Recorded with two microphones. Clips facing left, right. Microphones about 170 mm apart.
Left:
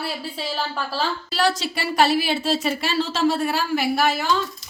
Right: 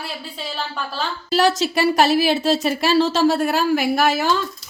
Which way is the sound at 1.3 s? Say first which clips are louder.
Right 8 dB; 45° right (ahead or behind).